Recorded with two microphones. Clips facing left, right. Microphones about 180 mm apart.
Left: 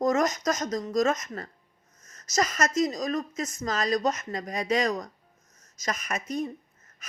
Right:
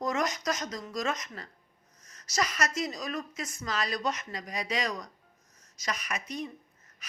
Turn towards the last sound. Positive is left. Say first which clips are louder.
# left 2 dB
turn(degrees=45)  # may be behind; listen again after turning